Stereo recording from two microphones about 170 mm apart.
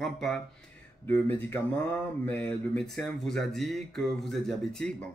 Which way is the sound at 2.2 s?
10° left (ahead or behind).